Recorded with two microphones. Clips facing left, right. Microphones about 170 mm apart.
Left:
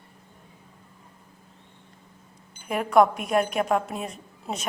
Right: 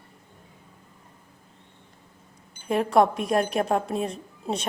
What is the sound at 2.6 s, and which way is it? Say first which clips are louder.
A woman's voice: even; 30° right (ahead or behind).